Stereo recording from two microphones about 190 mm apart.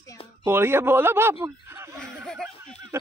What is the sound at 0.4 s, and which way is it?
Speech, 10° right (ahead or behind).